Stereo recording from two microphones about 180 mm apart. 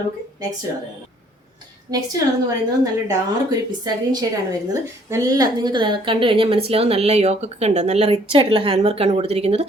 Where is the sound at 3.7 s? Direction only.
20° right (ahead or behind).